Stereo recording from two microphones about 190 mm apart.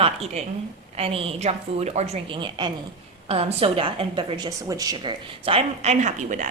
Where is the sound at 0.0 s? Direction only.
30° right (ahead or behind).